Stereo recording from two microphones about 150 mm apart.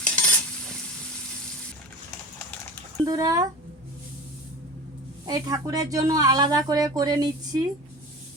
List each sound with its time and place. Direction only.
0.0 s stir: 5° left (ahead or behind)
3.0 s speech: 25° right (ahead or behind)
5.2 s speech: 25° right (ahead or behind)